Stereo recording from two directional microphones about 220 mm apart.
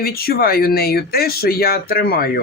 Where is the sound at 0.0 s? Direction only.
45° left (ahead or behind).